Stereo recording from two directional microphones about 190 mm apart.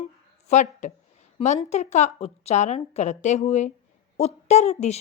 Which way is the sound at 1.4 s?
30° left (ahead or behind).